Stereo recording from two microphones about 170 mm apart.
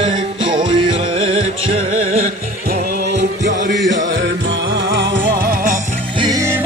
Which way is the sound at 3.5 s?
50° right (ahead or behind).